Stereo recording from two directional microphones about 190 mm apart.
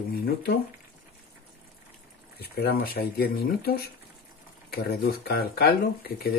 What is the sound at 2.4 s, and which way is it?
Speech, 55° left (ahead or behind).